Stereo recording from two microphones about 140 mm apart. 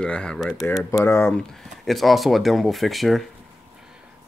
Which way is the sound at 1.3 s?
5° left (ahead or behind).